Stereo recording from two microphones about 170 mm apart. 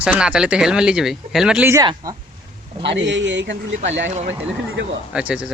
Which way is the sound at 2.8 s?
90° right.